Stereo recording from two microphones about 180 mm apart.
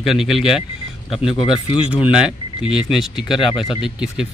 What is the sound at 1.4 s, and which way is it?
Speech, 30° left (ahead or behind).